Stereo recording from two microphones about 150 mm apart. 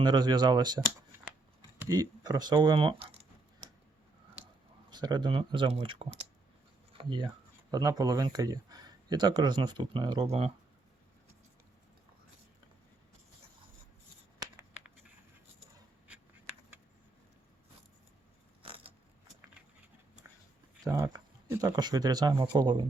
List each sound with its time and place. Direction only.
0.0 s speech: 30° right (ahead or behind)
1.8 s speech: 25° right (ahead or behind)
4.9 s speech: 30° right (ahead or behind)
20.8 s speech: 25° right (ahead or behind)